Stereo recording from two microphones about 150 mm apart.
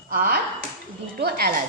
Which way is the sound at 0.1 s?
75° right (ahead or behind).